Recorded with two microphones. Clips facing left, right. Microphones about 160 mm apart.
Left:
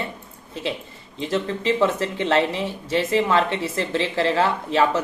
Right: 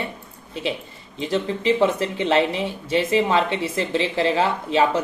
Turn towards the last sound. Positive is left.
turn(degrees=-15)  # may be behind; listen again after turning